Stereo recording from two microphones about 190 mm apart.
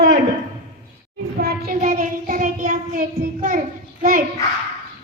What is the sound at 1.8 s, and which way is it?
Child singing, 45° right (ahead or behind).